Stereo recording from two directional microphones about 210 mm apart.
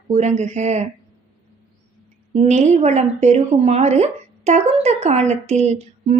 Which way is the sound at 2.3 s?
30° right (ahead or behind).